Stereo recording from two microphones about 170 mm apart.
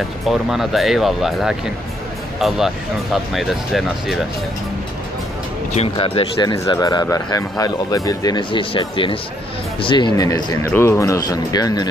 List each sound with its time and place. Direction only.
0.3 s speech: centre (ahead or behind)
5.7 s speech: 35° left (ahead or behind)